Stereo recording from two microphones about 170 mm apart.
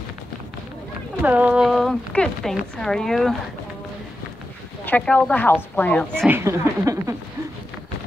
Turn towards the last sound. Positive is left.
turn(degrees=-20)  # may be behind; listen again after turning